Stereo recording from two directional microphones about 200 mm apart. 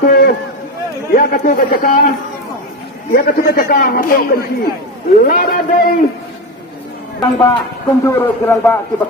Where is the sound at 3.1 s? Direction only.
45° left (ahead or behind).